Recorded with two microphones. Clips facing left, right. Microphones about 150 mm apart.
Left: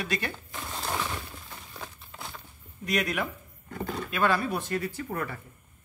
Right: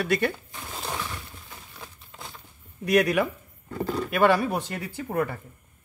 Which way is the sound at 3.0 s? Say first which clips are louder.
Right 7 dB; 75° right (ahead or behind).